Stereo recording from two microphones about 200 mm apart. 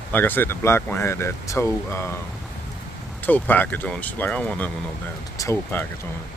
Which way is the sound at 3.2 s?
10° left (ahead or behind).